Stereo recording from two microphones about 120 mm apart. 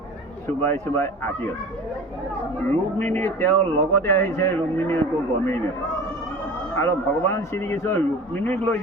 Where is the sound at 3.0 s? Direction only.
15° left (ahead or behind).